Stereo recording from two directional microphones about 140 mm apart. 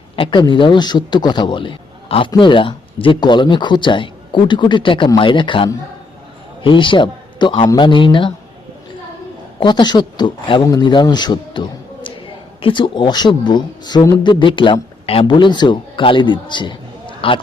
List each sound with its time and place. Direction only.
0.2 s a man's voice: 35° left (ahead or behind)
9.6 s speech: 35° left (ahead or behind)
12.6 s speech: 35° left (ahead or behind)